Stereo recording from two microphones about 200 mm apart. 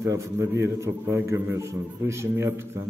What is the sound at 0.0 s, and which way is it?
A man's voice, 15° right (ahead or behind).